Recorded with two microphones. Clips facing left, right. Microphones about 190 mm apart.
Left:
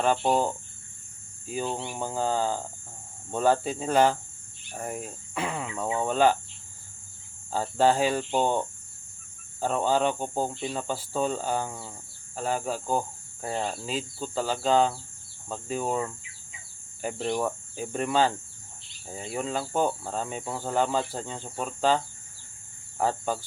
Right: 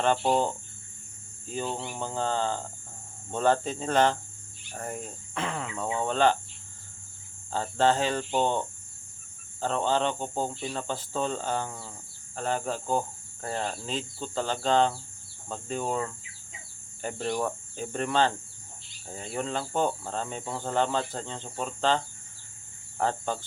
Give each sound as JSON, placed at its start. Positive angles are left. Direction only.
{"t": 0.0, "sound": "cricket", "side_deg": 5}
{"t": 7.5, "sound": "cricket", "side_deg": 10}
{"t": 15.4, "sound": "speech", "side_deg": 5}
{"t": 17.0, "sound": "cricket", "side_deg": 5}